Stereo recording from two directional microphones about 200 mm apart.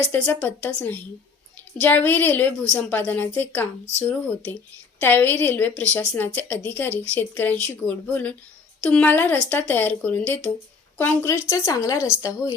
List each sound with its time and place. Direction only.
0.1 s a woman's voice: 10° left (ahead or behind)
4.9 s a woman's voice: 10° left (ahead or behind)